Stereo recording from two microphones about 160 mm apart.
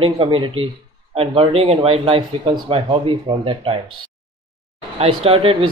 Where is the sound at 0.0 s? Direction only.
35° right (ahead or behind).